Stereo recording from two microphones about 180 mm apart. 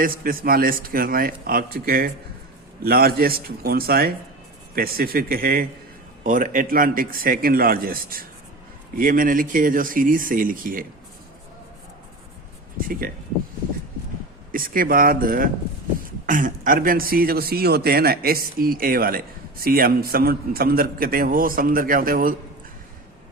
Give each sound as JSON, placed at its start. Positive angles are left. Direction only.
{"t": 0.0, "sound": "a man's voice", "side_deg": -50}
{"t": 14.5, "sound": "a man's voice", "side_deg": -50}